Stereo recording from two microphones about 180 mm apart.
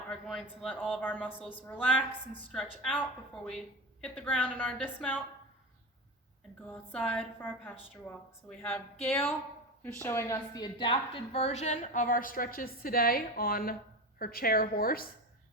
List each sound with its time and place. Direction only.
0.1 s a man's voice: centre (ahead or behind)
4.0 s speech: 5° left (ahead or behind)
6.7 s a woman's voice: 5° left (ahead or behind); by 15.0 s 55° left (ahead or behind)